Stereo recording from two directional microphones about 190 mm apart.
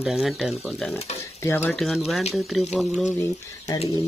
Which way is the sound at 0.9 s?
35° left (ahead or behind).